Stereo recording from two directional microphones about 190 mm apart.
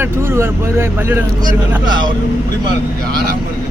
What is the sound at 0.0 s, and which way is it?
Speech, 10° right (ahead or behind).